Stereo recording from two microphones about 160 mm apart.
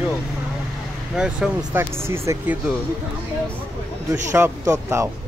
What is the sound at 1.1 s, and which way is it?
Speech, 5° right (ahead or behind).